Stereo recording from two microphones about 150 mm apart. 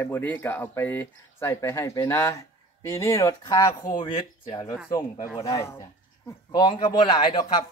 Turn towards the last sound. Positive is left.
turn(degrees=30)  # may be behind; listen again after turning